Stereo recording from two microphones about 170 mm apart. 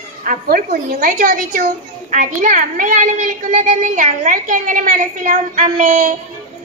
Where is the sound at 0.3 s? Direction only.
60° right (ahead or behind).